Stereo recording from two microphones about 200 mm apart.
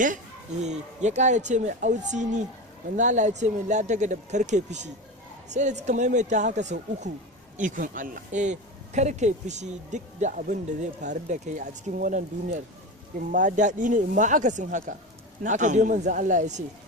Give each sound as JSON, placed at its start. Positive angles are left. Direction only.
{"t": 0.6, "sound": "speech", "side_deg": -35}